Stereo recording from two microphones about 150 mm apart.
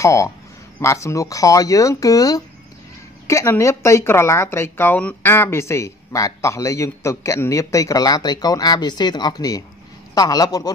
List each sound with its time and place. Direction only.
0.0 s speech: 20° left (ahead or behind)